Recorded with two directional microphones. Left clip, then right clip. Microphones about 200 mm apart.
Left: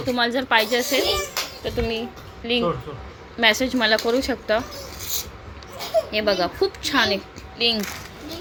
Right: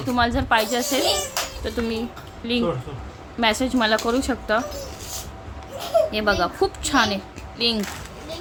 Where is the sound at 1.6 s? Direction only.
15° right (ahead or behind).